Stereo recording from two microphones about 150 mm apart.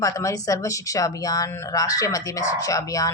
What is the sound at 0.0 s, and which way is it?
Speech, 20° left (ahead or behind).